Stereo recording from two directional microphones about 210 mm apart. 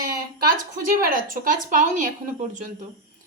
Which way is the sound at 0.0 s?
45° right (ahead or behind).